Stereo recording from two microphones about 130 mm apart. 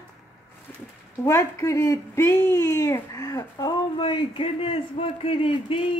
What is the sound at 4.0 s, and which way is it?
A woman's voice, 40° left (ahead or behind).